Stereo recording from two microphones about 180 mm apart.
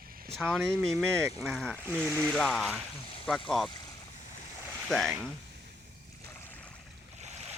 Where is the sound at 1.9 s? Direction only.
10° right (ahead or behind).